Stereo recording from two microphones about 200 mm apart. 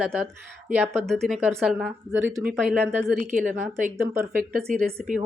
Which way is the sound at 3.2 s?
40° right (ahead or behind).